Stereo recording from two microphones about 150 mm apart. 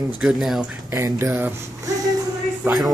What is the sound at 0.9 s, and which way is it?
Speech, 20° right (ahead or behind).